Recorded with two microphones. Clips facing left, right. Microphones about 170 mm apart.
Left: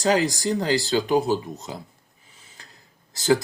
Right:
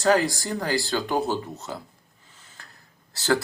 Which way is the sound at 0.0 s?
15° left (ahead or behind).